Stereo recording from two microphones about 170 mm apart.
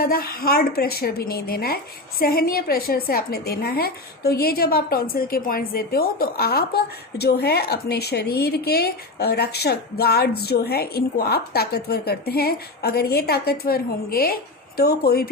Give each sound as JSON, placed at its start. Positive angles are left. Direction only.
{"t": 0.0, "sound": "a woman's voice", "side_deg": 60}